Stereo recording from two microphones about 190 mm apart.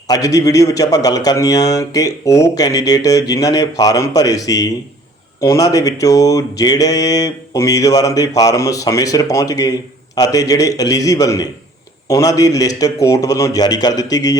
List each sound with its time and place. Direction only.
0.1 s a man's voice: 15° left (ahead or behind)